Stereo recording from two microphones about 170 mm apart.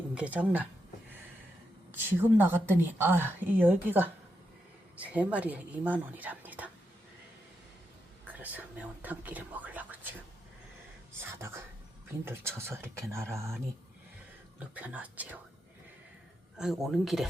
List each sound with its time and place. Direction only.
0.1 s speech: 5° right (ahead or behind)
1.9 s speech: 10° right (ahead or behind)
8.3 s speech: 10° right (ahead or behind)
11.2 s whispering: 15° right (ahead or behind)
12.2 s speech: 15° right (ahead or behind)
14.8 s speech: 10° right (ahead or behind)
16.6 s speech: centre (ahead or behind)